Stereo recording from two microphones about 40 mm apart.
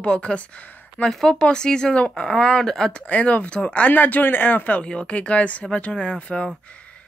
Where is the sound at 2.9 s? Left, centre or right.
Left.